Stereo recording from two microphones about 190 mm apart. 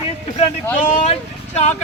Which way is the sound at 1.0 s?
35° left (ahead or behind).